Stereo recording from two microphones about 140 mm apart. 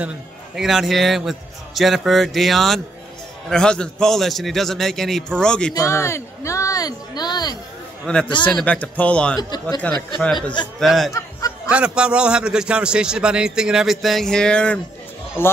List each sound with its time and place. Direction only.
0.6 s a man's voice: 5° right (ahead or behind)
5.8 s a sound: 20° left (ahead or behind)
8.0 s a man's voice: 5° left (ahead or behind)
9.4 s speech: 30° left (ahead or behind)
10.1 s a man's voice: 5° left (ahead or behind)
11.1 s a sound: 25° left (ahead or behind)
11.7 s a man's voice: 5° right (ahead or behind); by 15.5 s 15° left (ahead or behind)